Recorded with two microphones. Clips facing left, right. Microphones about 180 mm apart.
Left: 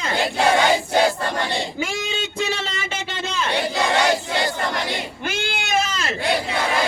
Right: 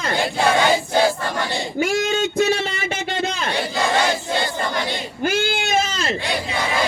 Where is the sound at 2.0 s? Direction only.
45° right (ahead or behind).